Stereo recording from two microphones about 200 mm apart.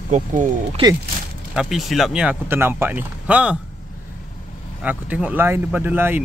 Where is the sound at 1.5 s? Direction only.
5° right (ahead or behind).